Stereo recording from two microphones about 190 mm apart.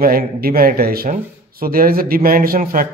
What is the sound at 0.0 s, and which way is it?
Speech, 50° right (ahead or behind).